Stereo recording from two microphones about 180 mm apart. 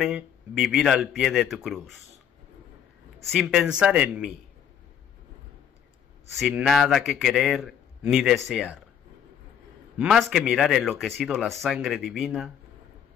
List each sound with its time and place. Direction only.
0.0 s speech: centre (ahead or behind)
3.3 s speech: 5° right (ahead or behind)
6.3 s speech: centre (ahead or behind)
9.9 s speech: centre (ahead or behind)